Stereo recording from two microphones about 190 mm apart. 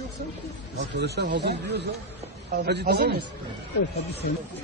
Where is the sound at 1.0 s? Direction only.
60° right (ahead or behind).